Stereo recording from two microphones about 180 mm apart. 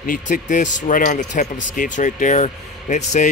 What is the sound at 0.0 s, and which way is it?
Speech, 50° left (ahead or behind).